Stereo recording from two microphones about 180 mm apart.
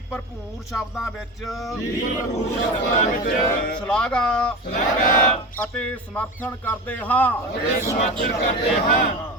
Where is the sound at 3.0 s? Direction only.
50° left (ahead or behind).